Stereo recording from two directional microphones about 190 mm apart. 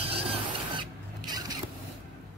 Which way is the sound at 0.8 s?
20° right (ahead or behind).